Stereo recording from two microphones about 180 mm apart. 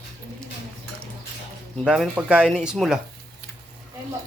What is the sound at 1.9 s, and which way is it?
Speech, 5° right (ahead or behind).